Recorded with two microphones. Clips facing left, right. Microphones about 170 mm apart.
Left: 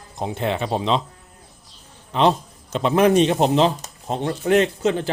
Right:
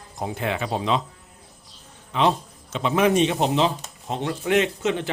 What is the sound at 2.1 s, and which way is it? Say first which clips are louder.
A man's voice: left 3 dB; 35° left (ahead or behind).